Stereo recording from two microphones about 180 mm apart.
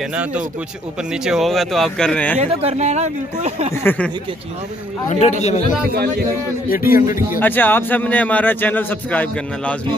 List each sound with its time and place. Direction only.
0.1 s speech: 5° right (ahead or behind)
2.4 s speech: 40° right (ahead or behind)
3.7 s a man's voice: 10° left (ahead or behind)
5.2 s speech: 35° left (ahead or behind)
6.7 s speech: 55° left (ahead or behind)
7.3 s a man's voice: 10° left (ahead or behind)